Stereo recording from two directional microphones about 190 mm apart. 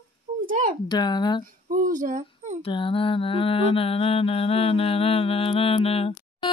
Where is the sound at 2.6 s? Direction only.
25° left (ahead or behind).